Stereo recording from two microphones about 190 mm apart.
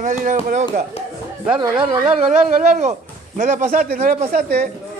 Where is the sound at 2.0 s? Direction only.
Centre (ahead or behind).